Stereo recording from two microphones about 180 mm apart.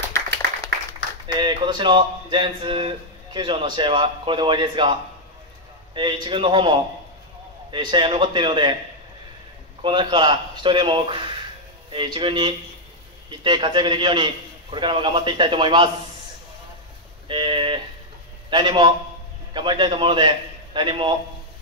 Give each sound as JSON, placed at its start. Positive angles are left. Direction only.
{"t": 1.2, "sound": "speech", "side_deg": -25}
{"t": 5.9, "sound": "speech", "side_deg": -25}
{"t": 9.8, "sound": "speech", "side_deg": -25}
{"t": 17.3, "sound": "a sound", "side_deg": -30}
{"t": 18.5, "sound": "a man's voice", "side_deg": -25}